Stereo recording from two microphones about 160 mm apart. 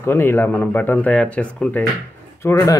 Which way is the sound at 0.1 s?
15° left (ahead or behind).